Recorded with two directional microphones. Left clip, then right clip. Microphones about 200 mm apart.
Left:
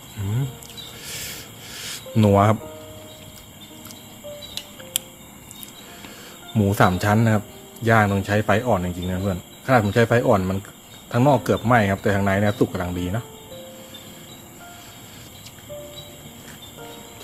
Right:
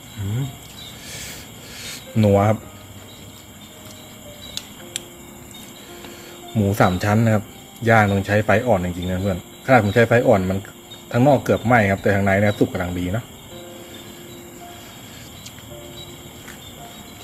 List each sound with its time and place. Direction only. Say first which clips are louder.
1.0 s music: left 2 dB; 35° left (ahead or behind)
6.7 s speech: even; 20° left (ahead or behind)